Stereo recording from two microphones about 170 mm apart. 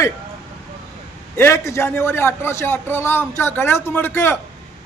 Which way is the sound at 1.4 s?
15° left (ahead or behind).